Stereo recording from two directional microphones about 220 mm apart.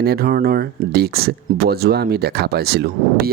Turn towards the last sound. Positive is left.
turn(degrees=-45)  # may be behind; listen again after turning